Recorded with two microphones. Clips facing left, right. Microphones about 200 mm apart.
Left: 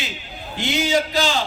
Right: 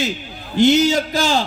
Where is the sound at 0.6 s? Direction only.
45° right (ahead or behind).